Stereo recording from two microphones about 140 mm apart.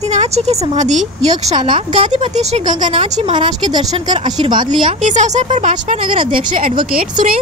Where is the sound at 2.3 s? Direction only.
55° right (ahead or behind).